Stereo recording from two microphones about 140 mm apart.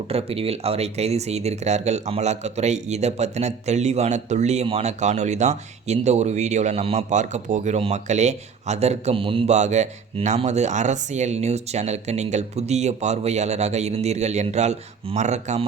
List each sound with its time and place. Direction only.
0.1 s speech: 45° right (ahead or behind)
9.6 s speech: 55° right (ahead or behind)